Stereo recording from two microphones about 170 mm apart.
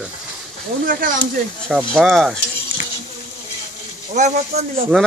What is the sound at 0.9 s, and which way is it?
Speech, 55° right (ahead or behind).